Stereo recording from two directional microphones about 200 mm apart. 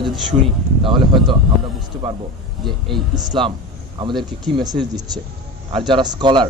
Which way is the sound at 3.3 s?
25° right (ahead or behind).